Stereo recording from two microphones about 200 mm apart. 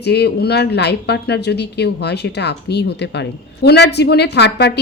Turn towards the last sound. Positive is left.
turn(degrees=55)  # may be behind; listen again after turning